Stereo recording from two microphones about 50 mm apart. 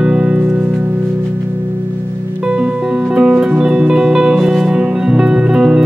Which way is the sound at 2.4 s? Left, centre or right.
Centre.